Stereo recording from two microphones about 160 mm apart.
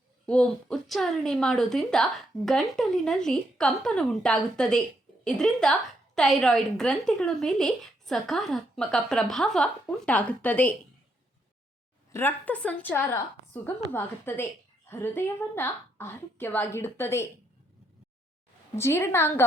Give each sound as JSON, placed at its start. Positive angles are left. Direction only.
{"t": 0.3, "sound": "a woman's voice", "side_deg": 5}
{"t": 12.1, "sound": "a woman's voice", "side_deg": 10}
{"t": 18.8, "sound": "a woman's voice", "side_deg": 15}